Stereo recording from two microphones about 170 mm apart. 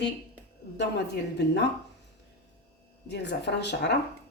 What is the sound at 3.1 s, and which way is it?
Speech, 90° left.